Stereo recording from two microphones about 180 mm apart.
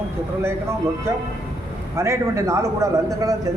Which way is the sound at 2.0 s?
15° right (ahead or behind).